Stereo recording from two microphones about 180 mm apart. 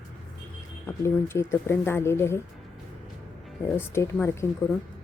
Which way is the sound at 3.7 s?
15° left (ahead or behind).